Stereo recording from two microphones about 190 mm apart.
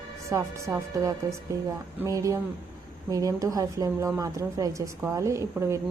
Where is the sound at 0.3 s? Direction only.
15° right (ahead or behind).